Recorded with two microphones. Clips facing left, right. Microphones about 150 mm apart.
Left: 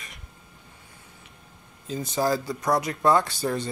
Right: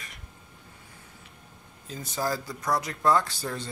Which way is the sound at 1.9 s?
20° left (ahead or behind).